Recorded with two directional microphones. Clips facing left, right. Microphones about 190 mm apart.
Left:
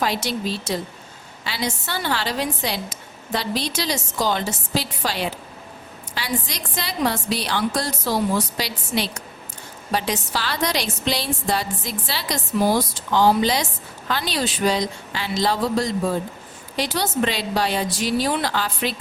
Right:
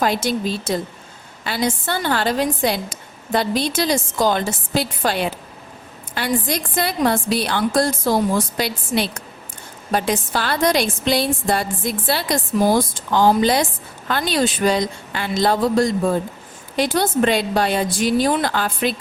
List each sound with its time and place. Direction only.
0.0 s a woman's voice: 50° right (ahead or behind)